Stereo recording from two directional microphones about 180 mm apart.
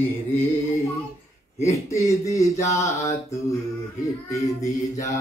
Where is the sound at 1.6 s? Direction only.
15° left (ahead or behind).